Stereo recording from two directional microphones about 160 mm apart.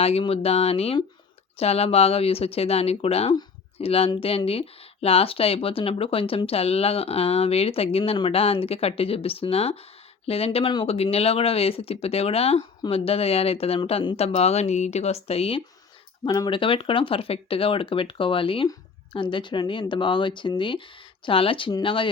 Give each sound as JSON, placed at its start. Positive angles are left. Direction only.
{"t": 0.0, "sound": "speech", "side_deg": 35}
{"t": 16.2, "sound": "speech", "side_deg": 25}